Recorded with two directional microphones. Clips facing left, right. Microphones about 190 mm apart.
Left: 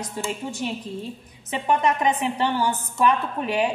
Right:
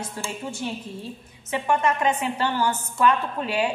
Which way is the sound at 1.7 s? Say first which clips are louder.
Left 1 dB; 15° left (ahead or behind).